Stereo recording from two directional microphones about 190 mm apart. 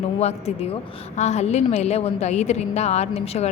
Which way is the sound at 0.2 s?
35° left (ahead or behind).